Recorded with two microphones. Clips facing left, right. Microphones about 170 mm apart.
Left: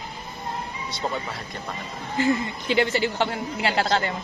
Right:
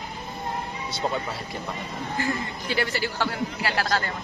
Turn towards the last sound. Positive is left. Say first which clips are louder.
# left 3 dB
turn(degrees=25)  # may be behind; listen again after turning